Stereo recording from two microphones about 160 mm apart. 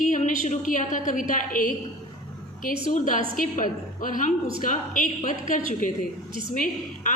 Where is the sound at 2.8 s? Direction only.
55° left (ahead or behind).